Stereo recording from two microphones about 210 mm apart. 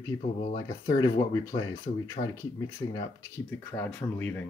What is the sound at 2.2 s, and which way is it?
Speech, 30° left (ahead or behind).